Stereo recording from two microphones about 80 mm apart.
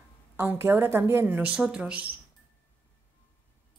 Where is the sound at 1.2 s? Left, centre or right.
Centre.